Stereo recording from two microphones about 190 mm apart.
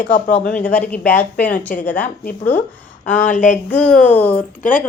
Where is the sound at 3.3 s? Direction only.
40° left (ahead or behind).